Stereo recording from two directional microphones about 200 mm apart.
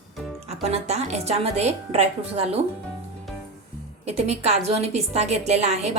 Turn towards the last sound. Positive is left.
turn(degrees=-30)  # may be behind; listen again after turning